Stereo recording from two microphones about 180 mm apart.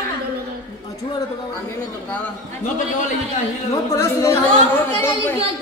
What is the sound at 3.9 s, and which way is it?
Speech, 15° left (ahead or behind).